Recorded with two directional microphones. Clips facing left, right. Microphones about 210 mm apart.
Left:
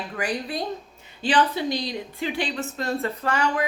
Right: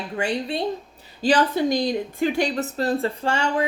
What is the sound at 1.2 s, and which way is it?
A woman's voice, 40° right (ahead or behind).